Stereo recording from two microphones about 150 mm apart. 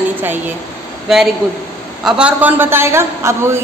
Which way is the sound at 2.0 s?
10° right (ahead or behind).